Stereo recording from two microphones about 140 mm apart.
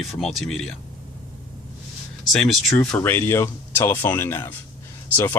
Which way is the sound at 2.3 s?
Centre (ahead or behind).